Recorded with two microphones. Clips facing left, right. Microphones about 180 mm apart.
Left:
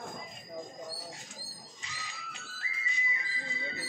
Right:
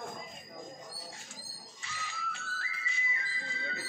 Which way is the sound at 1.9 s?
15° left (ahead or behind).